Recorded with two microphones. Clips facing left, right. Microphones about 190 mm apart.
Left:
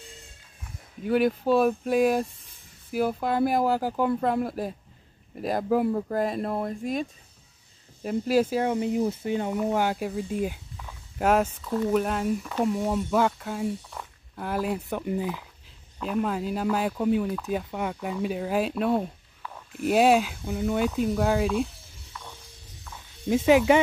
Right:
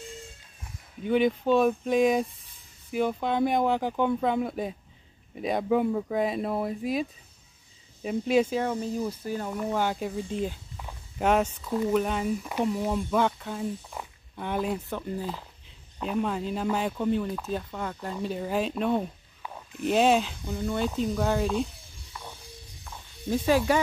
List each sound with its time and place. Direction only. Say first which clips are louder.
1.0 s speech: left 1 dB; 5° left (ahead or behind)
11.4 s speech: left 1 dB; 10° right (ahead or behind)
14.9 s speech: left 4 dB; 15° left (ahead or behind)
16.0 s speech: left 1 dB; centre (ahead or behind)
22.1 s music: right 1 dB; 10° right (ahead or behind)
23.2 s speech: left 4 dB; 15° left (ahead or behind)